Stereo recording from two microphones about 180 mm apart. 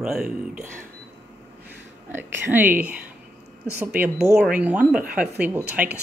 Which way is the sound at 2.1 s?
10° right (ahead or behind).